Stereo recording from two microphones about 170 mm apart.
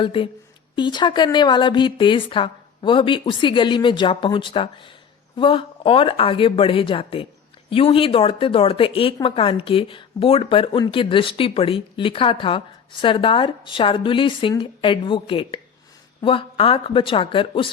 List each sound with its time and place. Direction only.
0.0 s speech: 30° left (ahead or behind)